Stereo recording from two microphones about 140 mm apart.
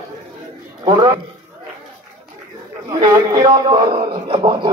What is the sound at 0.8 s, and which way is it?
Speech, 30° right (ahead or behind).